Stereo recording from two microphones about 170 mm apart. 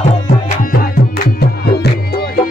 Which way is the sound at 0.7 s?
65° left (ahead or behind).